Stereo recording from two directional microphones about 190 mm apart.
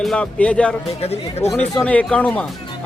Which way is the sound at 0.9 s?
35° left (ahead or behind).